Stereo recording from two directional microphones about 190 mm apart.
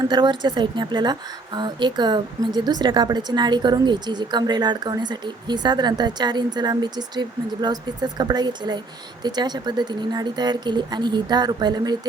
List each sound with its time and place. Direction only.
0.1 s a woman's voice: 25° right (ahead or behind)